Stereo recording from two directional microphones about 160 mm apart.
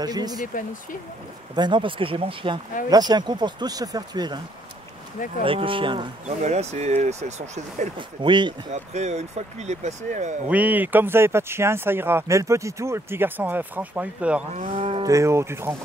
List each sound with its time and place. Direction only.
0.0 s speech: 25° right (ahead or behind)
1.5 s speech: 30° right (ahead or behind)
5.4 s speech: 35° right (ahead or behind)
6.2 s speech: 45° right (ahead or behind)
8.2 s speech: 30° right (ahead or behind)
8.7 s speech: 45° right (ahead or behind)
10.5 s speech: 10° right (ahead or behind)
14.5 s speech: 45° right (ahead or behind)
15.0 s speech: 20° right (ahead or behind)